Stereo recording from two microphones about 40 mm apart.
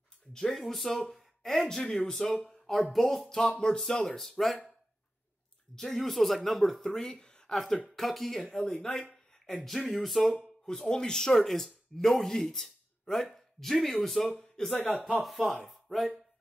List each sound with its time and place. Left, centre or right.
0.3 s speech: centre
0.6 s speech: centre
5.8 s speech: centre
6.9 s speech: centre
7.2 s a sound: centre
7.9 s speech: centre
8.8 s speech: left
9.8 s speech: centre
15.0 s speech: right
15.2 s speech: centre